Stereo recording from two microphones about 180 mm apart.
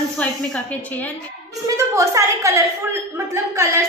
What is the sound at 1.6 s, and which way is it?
A woman's voice, 15° right (ahead or behind).